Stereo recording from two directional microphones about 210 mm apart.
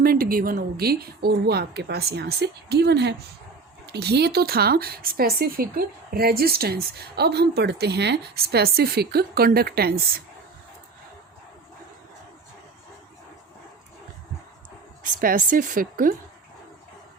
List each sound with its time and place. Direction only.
0.0 s speech: 45° right (ahead or behind)
15.0 s a woman's voice: 40° right (ahead or behind)